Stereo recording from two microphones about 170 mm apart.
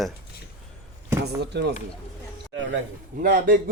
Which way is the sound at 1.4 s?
75° right (ahead or behind).